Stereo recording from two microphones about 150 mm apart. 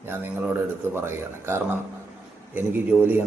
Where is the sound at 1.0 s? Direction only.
15° right (ahead or behind).